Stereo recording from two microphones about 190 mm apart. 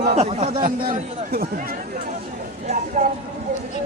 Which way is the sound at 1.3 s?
50° right (ahead or behind).